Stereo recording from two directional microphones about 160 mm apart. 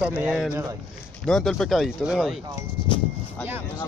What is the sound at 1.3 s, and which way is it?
Speech, 5° left (ahead or behind).